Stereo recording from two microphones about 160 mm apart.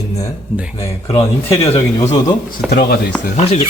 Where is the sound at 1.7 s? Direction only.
45° left (ahead or behind).